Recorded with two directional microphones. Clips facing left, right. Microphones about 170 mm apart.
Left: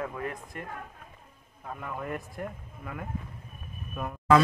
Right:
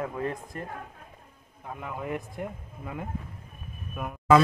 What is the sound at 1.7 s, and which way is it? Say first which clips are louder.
Speech: right 2 dB; 10° right (ahead or behind).